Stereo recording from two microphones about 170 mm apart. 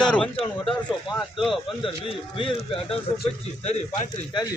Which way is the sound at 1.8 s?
30° left (ahead or behind).